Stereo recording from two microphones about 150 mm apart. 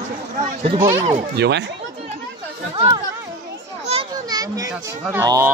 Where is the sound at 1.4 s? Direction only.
90° right.